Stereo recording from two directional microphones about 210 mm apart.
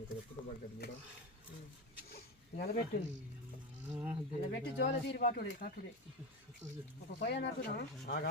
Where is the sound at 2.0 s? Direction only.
45° left (ahead or behind).